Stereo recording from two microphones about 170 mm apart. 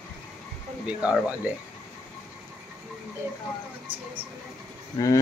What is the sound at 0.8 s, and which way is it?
Speech, 5° right (ahead or behind).